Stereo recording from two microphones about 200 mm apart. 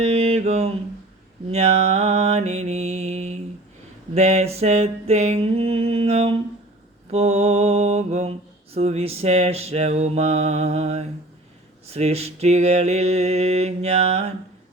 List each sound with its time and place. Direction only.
0.0 s mantra: 30° right (ahead or behind)